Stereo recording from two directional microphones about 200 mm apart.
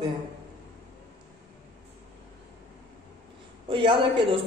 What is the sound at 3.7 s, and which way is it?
Speech, 25° right (ahead or behind).